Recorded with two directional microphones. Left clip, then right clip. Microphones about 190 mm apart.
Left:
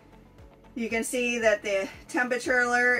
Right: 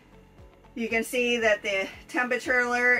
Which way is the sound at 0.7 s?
10° right (ahead or behind).